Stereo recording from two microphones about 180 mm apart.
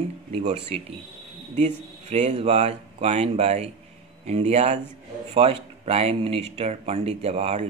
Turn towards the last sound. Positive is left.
turn(degrees=-35)  # may be behind; listen again after turning